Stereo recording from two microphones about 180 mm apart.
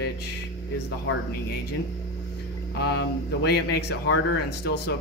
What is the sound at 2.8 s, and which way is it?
Speech, 65° left (ahead or behind).